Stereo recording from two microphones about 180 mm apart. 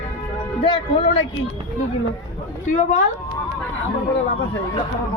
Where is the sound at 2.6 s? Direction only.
45° left (ahead or behind).